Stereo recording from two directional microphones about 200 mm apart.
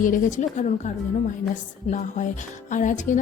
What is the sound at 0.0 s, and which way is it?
Speech, 40° left (ahead or behind).